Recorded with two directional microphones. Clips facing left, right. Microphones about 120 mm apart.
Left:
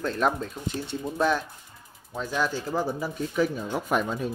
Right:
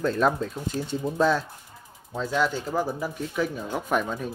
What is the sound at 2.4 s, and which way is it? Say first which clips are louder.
Speech: right 1 dB; 25° right (ahead or behind).